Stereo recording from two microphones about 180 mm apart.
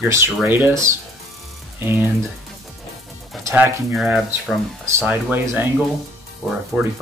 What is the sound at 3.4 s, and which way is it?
Speech, 15° right (ahead or behind).